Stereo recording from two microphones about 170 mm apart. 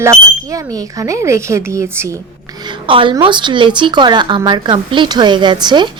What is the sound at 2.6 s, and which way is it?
A woman's voice, 30° right (ahead or behind).